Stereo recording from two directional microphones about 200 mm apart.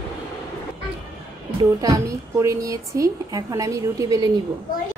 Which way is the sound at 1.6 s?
20° right (ahead or behind).